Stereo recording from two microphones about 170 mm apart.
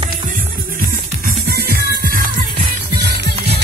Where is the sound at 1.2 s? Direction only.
65° right (ahead or behind).